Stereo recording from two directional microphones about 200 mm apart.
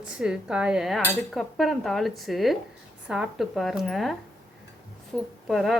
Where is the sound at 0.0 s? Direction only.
5° right (ahead or behind).